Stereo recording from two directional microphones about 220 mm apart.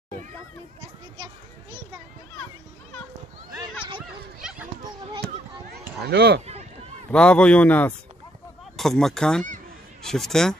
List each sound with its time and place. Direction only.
4.4 s children playing: 5° right (ahead or behind)
5.7 s a sound: 45° right (ahead or behind)
7.1 s speech: 5° left (ahead or behind)